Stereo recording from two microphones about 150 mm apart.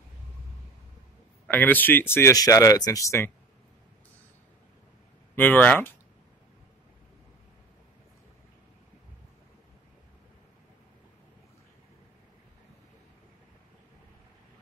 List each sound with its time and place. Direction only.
1.5 s speech: 10° left (ahead or behind)
5.3 s speech: 10° left (ahead or behind)